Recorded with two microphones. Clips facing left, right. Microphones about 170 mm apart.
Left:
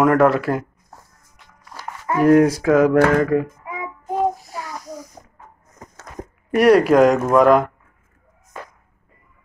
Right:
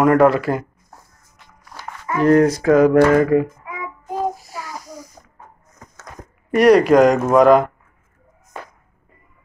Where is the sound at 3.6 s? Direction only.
25° left (ahead or behind).